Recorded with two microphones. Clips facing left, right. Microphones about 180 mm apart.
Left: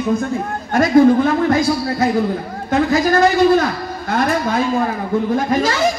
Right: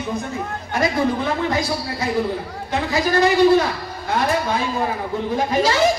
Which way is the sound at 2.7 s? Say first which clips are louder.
Left 5 dB; 50° left (ahead or behind).